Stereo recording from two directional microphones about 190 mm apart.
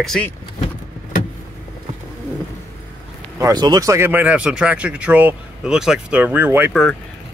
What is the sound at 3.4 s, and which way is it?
Speech, 20° right (ahead or behind).